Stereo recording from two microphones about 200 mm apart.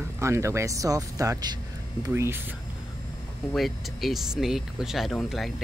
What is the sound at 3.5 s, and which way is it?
Speech, centre (ahead or behind).